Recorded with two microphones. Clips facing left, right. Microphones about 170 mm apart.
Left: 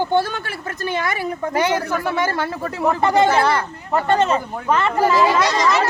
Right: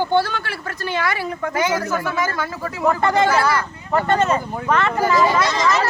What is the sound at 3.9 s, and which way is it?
Speech, 10° left (ahead or behind).